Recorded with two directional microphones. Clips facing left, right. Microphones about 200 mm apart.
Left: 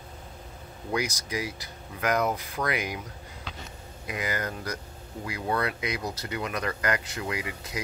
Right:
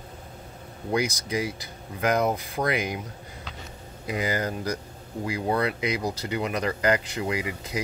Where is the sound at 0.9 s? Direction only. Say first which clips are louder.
Right 4 dB; 25° right (ahead or behind).